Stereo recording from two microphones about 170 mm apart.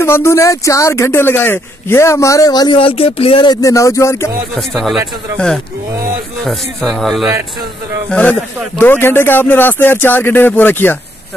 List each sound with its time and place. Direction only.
0.0 s a man's voice: 15° left (ahead or behind); by 3.5 s 30° left (ahead or behind)
3.6 s a man's voice: 20° left (ahead or behind)
4.6 s speech: centre (ahead or behind)
6.4 s a man's voice: centre (ahead or behind)